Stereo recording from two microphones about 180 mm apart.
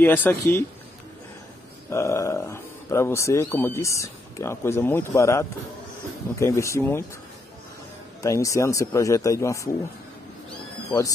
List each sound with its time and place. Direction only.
0.0 s speech: 10° left (ahead or behind)
1.9 s speech: 15° left (ahead or behind)
8.2 s speech: 20° left (ahead or behind)